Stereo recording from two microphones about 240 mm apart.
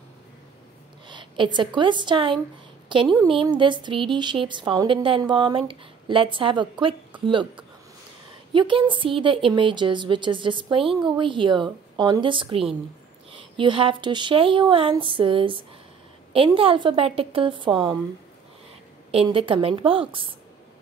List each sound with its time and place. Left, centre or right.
1.0 s speech: right
19.1 s speech: right